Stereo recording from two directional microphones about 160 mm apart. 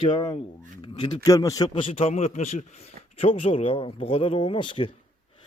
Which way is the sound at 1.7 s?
35° left (ahead or behind).